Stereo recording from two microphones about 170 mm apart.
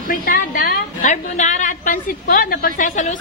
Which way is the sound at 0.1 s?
55° left (ahead or behind).